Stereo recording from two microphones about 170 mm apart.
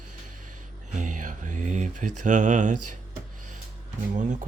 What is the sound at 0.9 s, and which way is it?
Speech, 45° right (ahead or behind).